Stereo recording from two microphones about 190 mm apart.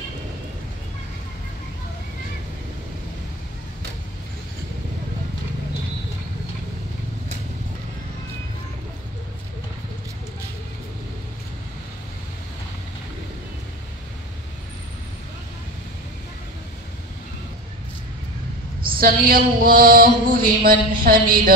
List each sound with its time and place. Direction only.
18.9 s mantra: 50° right (ahead or behind)